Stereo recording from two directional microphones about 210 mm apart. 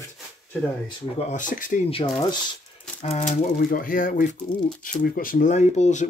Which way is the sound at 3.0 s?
35° left (ahead or behind).